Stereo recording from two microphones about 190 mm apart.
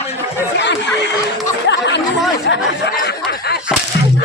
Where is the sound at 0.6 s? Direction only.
65° left (ahead or behind).